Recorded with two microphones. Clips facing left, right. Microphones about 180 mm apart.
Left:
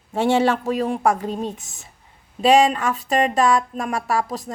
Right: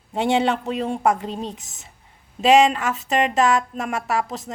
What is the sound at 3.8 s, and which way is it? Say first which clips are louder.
Speech: left 1 dB; 20° right (ahead or behind).